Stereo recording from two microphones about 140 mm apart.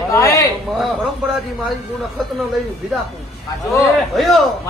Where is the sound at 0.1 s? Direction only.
20° left (ahead or behind).